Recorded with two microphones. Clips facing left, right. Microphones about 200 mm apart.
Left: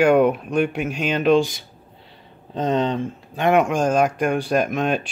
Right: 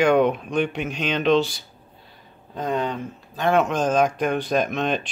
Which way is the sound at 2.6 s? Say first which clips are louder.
Left 4 dB; 25° left (ahead or behind).